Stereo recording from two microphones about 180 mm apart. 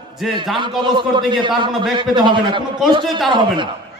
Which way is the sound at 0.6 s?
25° right (ahead or behind).